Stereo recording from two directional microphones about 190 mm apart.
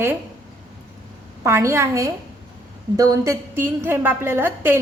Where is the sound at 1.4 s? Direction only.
15° right (ahead or behind).